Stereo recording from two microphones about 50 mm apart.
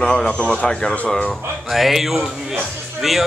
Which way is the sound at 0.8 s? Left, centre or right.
Centre.